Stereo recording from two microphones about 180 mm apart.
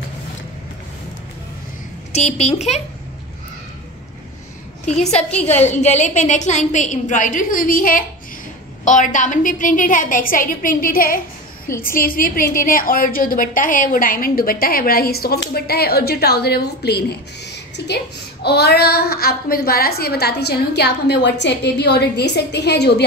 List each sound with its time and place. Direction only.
2.1 s a child's voice: 35° left (ahead or behind)
4.8 s a child's voice: 40° left (ahead or behind); by 23.0 s 65° left (ahead or behind)